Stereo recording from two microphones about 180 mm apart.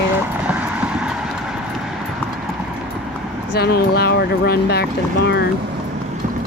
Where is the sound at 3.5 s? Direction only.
60° left (ahead or behind).